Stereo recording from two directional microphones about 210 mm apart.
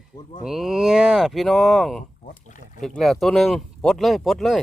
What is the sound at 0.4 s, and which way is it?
Speech, centre (ahead or behind).